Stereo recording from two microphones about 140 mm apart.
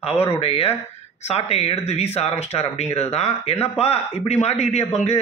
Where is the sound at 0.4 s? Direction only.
45° left (ahead or behind).